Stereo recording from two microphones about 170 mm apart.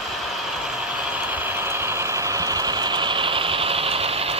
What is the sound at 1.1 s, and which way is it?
Vehicle, 10° right (ahead or behind).